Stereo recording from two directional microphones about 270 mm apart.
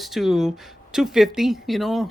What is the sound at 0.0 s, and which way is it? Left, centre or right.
Speech, centre.